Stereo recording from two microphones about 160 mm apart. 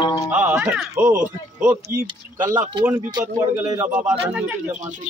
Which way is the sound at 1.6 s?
15° right (ahead or behind).